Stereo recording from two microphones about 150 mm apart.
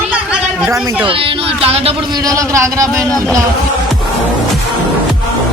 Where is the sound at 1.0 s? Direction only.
35° right (ahead or behind); by 3.1 s 20° right (ahead or behind).